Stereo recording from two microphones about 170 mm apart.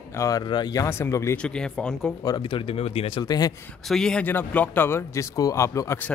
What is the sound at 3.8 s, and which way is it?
Speech, 5° left (ahead or behind).